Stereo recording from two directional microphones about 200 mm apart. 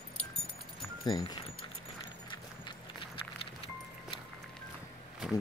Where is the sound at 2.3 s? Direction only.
25° left (ahead or behind).